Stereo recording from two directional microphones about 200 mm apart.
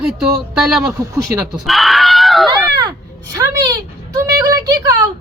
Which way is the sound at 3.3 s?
15° right (ahead or behind).